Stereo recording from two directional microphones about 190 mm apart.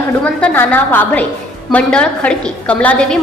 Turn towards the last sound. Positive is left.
turn(degrees=5)  # may be behind; listen again after turning